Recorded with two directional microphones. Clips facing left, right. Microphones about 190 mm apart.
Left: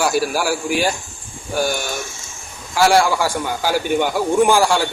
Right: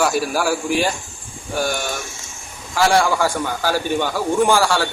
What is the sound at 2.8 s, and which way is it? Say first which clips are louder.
A man's voice: left 1 dB; 5° left (ahead or behind).